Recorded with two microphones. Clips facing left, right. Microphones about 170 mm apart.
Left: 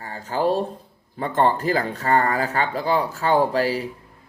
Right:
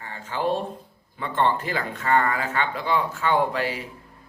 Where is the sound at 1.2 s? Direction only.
40° left (ahead or behind).